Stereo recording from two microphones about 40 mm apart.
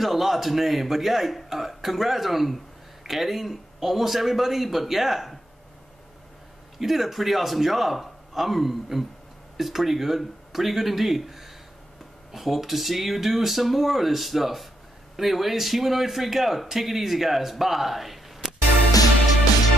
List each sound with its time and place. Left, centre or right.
0.0 s a man's voice: centre
6.8 s a man's voice: centre